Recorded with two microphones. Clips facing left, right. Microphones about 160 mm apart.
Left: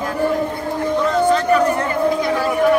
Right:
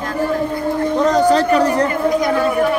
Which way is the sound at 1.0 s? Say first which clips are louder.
Right 4 dB; 40° right (ahead or behind).